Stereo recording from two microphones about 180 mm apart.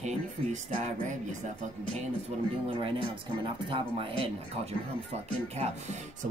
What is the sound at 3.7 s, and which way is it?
Speech, 30° right (ahead or behind).